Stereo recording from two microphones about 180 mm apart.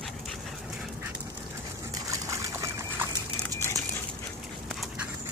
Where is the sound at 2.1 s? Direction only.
15° right (ahead or behind).